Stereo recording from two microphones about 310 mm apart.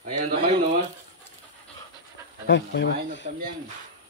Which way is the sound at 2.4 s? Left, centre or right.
Left.